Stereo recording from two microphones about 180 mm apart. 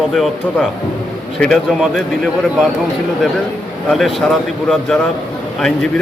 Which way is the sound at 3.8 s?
Centre (ahead or behind).